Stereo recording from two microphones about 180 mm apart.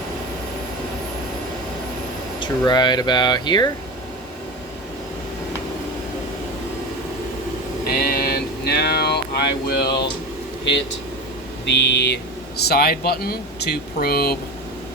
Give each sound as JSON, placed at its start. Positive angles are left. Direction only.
{"t": 2.4, "sound": "speech", "side_deg": 25}
{"t": 8.1, "sound": "a sound", "side_deg": 60}
{"t": 11.6, "sound": "speech", "side_deg": 75}